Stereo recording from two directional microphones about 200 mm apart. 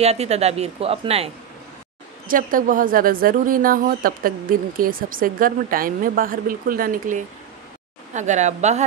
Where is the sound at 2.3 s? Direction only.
45° right (ahead or behind).